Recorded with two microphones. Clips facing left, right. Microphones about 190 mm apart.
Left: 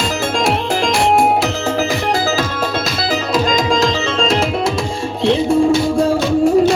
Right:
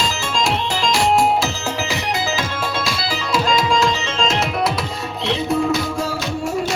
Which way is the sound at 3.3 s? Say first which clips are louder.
Left 1 dB; 40° left (ahead or behind).